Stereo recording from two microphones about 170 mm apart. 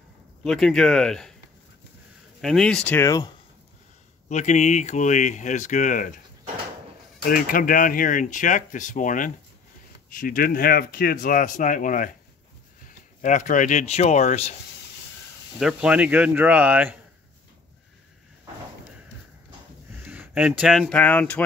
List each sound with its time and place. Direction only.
0.4 s speech: 5° left (ahead or behind)
2.4 s speech: 5° left (ahead or behind)
4.3 s speech: 45° left (ahead or behind)
7.2 s speech: 55° left (ahead or behind); by 14.5 s 40° left (ahead or behind)
15.6 s speech: 5° right (ahead or behind)
20.1 s speech: 10° right (ahead or behind)
20.9 s speech: 10° left (ahead or behind)